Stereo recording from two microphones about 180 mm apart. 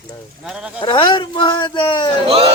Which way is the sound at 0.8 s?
25° left (ahead or behind).